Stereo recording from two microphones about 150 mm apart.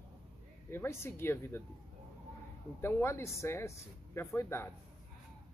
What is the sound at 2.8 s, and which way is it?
Speech, 15° left (ahead or behind).